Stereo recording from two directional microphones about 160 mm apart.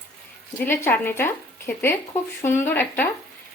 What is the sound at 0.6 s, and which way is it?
A woman's voice, 15° left (ahead or behind).